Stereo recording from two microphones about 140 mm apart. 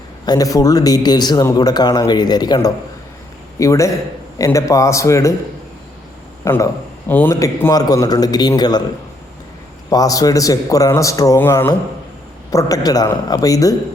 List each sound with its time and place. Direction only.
0.3 s speech: 25° left (ahead or behind)
6.4 s speech: 20° left (ahead or behind)
7.3 s speech: 25° left (ahead or behind)
9.9 s speech: 25° left (ahead or behind)